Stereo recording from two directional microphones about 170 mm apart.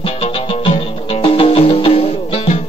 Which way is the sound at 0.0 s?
35° left (ahead or behind).